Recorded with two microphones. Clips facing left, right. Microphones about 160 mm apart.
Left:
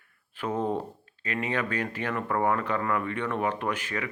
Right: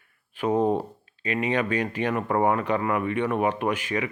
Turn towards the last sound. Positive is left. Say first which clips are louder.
# right 5 dB
turn(degrees=-15)  # may be behind; listen again after turning